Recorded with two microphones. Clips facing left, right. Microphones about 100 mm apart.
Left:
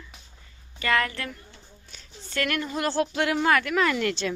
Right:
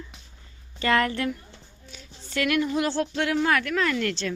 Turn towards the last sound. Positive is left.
turn(degrees=10)  # may be behind; listen again after turning